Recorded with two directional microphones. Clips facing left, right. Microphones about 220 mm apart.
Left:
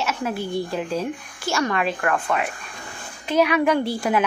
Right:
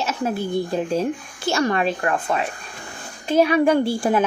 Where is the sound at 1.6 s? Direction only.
35° right (ahead or behind).